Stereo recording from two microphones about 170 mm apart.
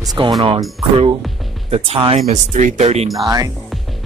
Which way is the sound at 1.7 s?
35° right (ahead or behind).